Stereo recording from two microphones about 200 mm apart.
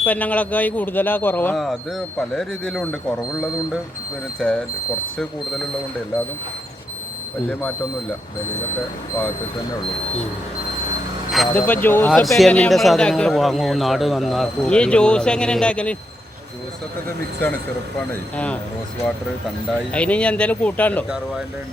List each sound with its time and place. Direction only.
0.0 s speech: 10° left (ahead or behind)
4.4 s speech: 5° left (ahead or behind)
11.3 s speech: 5° left (ahead or behind)
18.1 s speech: 5° left (ahead or behind)
19.9 s speech: 5° left (ahead or behind)